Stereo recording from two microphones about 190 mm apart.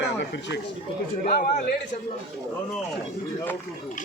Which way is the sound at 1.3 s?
50° left (ahead or behind).